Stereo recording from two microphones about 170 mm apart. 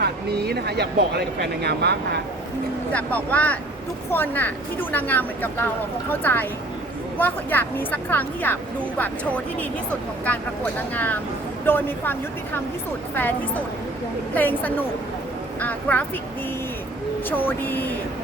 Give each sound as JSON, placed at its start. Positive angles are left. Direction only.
{"t": 0.0, "sound": "speech", "side_deg": -70}
{"t": 2.9, "sound": "a woman's voice", "side_deg": 10}
{"t": 13.1, "sound": "a woman's voice", "side_deg": 10}
{"t": 17.2, "sound": "a woman's voice", "side_deg": 10}